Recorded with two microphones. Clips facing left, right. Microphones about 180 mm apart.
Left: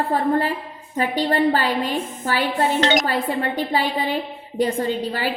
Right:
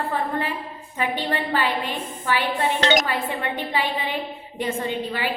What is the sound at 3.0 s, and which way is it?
A woman's voice, 40° left (ahead or behind).